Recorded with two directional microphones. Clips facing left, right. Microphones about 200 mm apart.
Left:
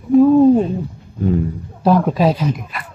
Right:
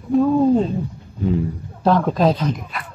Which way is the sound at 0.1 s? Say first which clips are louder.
Left 5 dB; 10° left (ahead or behind).